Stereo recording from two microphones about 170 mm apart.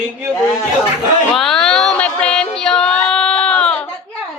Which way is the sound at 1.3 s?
Centre (ahead or behind).